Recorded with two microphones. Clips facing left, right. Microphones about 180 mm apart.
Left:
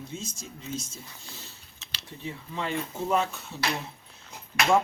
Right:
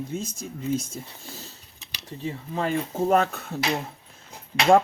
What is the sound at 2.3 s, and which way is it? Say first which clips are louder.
Speech: right 6 dB; 45° right (ahead or behind).